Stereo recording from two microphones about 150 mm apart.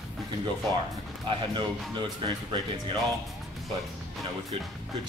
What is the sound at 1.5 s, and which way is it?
Speech, 30° right (ahead or behind).